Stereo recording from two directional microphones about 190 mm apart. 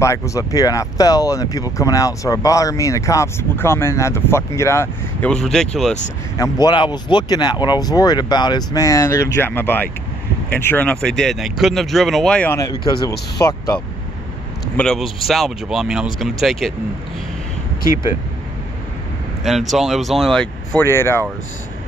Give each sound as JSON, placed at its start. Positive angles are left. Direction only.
{"t": 0.0, "sound": "speech", "side_deg": 15}
{"t": 6.3, "sound": "speech", "side_deg": 20}
{"t": 12.5, "sound": "speech", "side_deg": 20}
{"t": 14.8, "sound": "speech", "side_deg": 5}
{"t": 19.4, "sound": "speech", "side_deg": 0}